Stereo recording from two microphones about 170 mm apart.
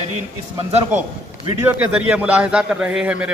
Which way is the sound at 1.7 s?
10° right (ahead or behind).